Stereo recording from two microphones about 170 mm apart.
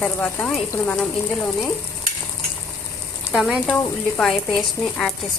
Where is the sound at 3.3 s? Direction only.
Centre (ahead or behind).